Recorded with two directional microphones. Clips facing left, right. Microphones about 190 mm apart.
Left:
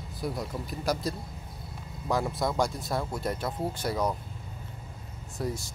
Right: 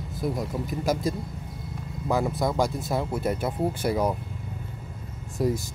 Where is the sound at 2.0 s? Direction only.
5° right (ahead or behind).